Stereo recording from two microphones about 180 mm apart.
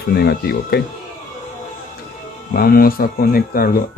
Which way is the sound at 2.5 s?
55° left (ahead or behind).